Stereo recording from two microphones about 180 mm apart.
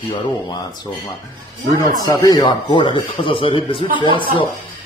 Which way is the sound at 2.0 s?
20° left (ahead or behind).